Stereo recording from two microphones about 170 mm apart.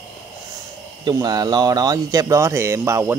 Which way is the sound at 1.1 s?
25° right (ahead or behind).